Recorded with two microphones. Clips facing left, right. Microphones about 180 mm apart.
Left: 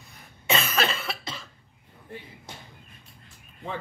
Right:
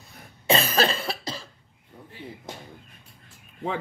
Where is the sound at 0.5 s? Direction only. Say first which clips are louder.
Right 4 dB; 35° right (ahead or behind).